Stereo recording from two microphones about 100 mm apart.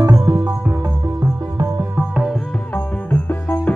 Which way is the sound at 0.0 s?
35° right (ahead or behind).